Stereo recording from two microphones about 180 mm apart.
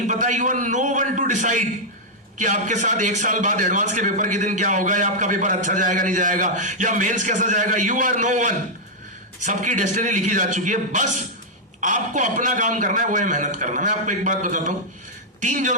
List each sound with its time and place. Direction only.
0.1 s a man's voice: 45° right (ahead or behind)